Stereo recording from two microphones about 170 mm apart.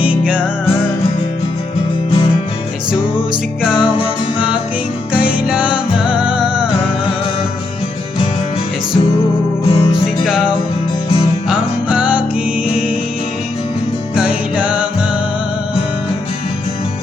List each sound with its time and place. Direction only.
3.6 s music: 5° right (ahead or behind)
6.1 s music: 5° right (ahead or behind)
9.6 s music: 30° left (ahead or behind)
10.2 s music: 5° right (ahead or behind)
14.2 s music: 5° right (ahead or behind)